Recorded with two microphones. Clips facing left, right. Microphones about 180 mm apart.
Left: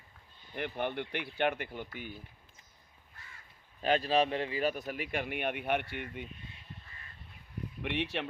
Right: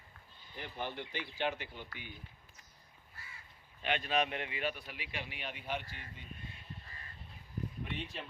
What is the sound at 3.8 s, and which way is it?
Speech, 35° left (ahead or behind).